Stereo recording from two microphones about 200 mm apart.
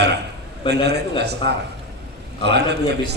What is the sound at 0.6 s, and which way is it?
Speech, 55° right (ahead or behind).